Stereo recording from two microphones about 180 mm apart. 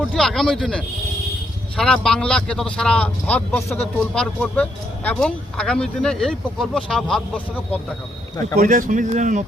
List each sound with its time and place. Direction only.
0.1 s speech: centre (ahead or behind)
8.5 s speech: 50° right (ahead or behind)